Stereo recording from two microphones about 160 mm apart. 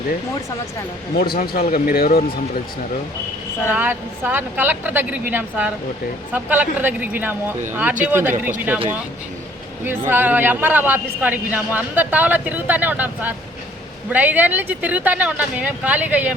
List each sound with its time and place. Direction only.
1.2 s speech: 70° left (ahead or behind)
3.7 s a man's voice: 10° right (ahead or behind)
10.1 s a man's voice: 10° right (ahead or behind)